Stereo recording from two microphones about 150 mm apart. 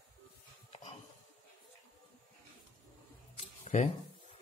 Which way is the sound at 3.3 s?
50° left (ahead or behind).